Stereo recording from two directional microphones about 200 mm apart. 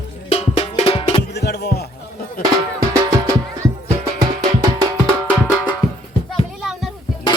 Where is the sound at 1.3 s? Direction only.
55° left (ahead or behind).